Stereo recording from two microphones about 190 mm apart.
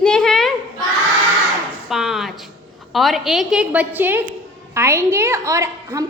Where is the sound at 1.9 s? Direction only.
Centre (ahead or behind).